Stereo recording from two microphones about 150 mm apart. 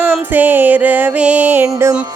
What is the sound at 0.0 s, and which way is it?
Music, 10° right (ahead or behind).